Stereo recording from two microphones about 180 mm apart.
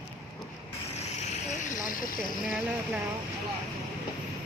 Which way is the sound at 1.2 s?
40° left (ahead or behind).